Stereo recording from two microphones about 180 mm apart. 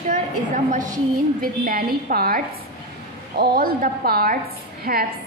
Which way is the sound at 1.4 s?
50° right (ahead or behind).